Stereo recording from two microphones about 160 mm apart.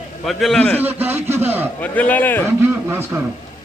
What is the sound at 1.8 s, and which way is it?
Speech, 10° left (ahead or behind).